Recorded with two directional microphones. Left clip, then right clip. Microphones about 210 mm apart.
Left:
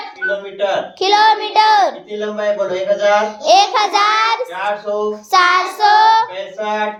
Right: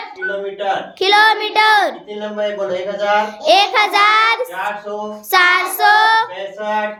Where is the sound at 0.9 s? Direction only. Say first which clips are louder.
Even; 15° right (ahead or behind).